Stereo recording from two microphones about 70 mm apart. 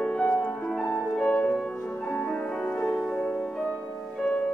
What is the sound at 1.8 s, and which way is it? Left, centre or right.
Music, centre.